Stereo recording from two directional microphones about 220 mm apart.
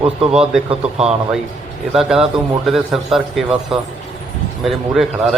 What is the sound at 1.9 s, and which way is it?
A man's voice, centre (ahead or behind).